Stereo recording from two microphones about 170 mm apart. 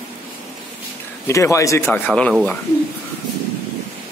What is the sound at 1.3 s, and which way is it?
Speech, 15° left (ahead or behind).